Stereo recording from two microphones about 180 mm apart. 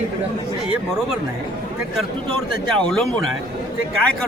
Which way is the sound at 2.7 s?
5° left (ahead or behind).